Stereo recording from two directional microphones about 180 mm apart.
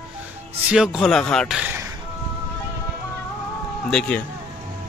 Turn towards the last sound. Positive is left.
turn(degrees=5)  # may be behind; listen again after turning